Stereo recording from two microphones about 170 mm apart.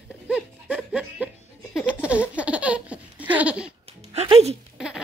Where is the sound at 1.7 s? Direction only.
5° right (ahead or behind).